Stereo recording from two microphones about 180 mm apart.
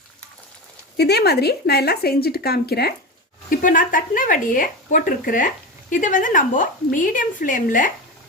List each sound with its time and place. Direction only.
0.9 s speech: 65° left (ahead or behind)
3.5 s speech: 50° left (ahead or behind)